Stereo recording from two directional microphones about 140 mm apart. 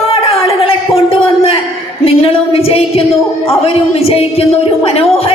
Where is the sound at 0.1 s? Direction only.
45° left (ahead or behind).